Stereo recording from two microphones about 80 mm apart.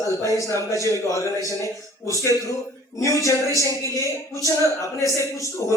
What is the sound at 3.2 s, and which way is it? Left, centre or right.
A man's voice, left.